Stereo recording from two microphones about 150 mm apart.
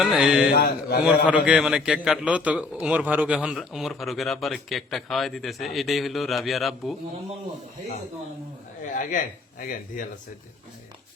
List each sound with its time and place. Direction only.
0.0 s a man's voice: 5° right (ahead or behind)
0.5 s a man's voice: 90° left
1.0 s a man's voice: 5° right (ahead or behind)
8.9 s speech: 60° left (ahead or behind)